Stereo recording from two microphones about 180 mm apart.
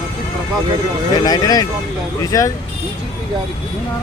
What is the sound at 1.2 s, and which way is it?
Speech, 20° left (ahead or behind).